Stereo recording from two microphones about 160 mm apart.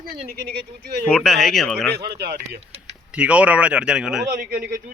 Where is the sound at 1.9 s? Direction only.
85° right.